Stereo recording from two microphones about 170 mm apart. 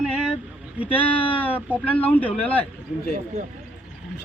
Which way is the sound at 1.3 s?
10° left (ahead or behind).